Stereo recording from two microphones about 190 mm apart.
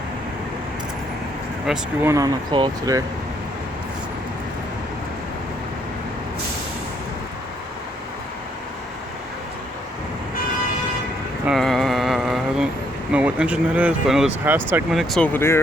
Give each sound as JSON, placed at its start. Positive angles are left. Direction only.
{"t": 1.6, "sound": "speech", "side_deg": -5}
{"t": 2.0, "sound": "speech", "side_deg": -20}
{"t": 11.4, "sound": "a sound", "side_deg": 0}
{"t": 13.1, "sound": "speech", "side_deg": -5}